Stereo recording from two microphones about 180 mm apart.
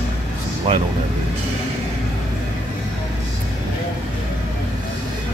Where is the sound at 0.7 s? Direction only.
30° right (ahead or behind).